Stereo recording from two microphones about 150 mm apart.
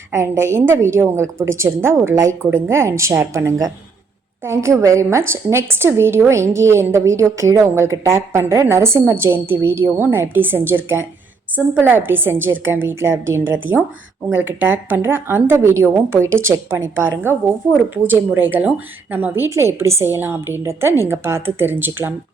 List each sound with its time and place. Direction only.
0.1 s a woman's voice: 20° right (ahead or behind)